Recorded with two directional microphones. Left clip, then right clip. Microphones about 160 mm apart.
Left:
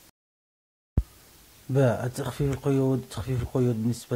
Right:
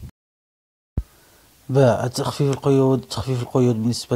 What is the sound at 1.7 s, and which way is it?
Speech, 15° right (ahead or behind).